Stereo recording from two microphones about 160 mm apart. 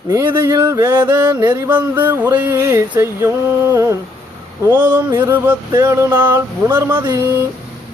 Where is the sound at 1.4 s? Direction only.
25° right (ahead or behind).